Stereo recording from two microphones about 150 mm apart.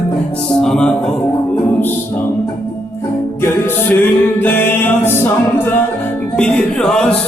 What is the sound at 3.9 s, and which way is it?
Music, 15° left (ahead or behind).